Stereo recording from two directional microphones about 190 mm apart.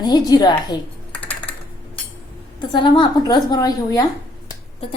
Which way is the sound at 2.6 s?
25° left (ahead or behind).